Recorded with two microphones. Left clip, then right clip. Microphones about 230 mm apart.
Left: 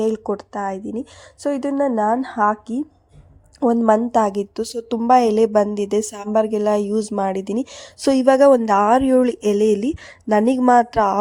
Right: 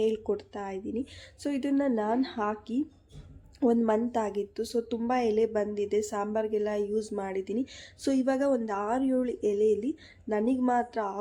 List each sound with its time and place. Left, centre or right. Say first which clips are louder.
0.0 s a woman's voice: left 7 dB; left